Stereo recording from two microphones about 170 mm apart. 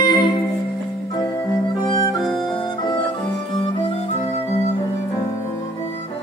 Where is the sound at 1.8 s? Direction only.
30° left (ahead or behind).